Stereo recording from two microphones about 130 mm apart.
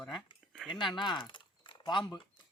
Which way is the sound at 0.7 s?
35° left (ahead or behind).